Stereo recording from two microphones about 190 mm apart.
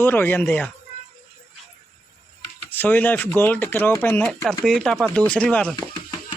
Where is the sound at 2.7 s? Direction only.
10° left (ahead or behind).